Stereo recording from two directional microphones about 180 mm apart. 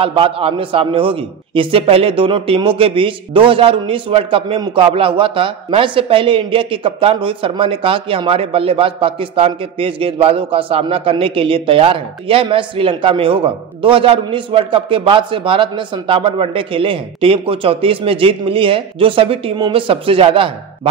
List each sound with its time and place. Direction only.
0.0 s a man's voice: 30° right (ahead or behind)